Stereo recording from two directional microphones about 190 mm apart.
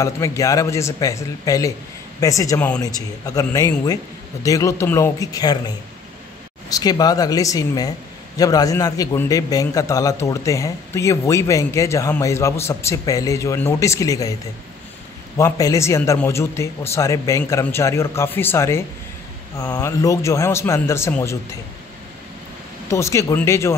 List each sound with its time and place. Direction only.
0.0 s a man's voice: 15° left (ahead or behind)
6.7 s a man's voice: 20° left (ahead or behind)
15.3 s a man's voice: 15° left (ahead or behind)
22.8 s a man's voice: 15° left (ahead or behind)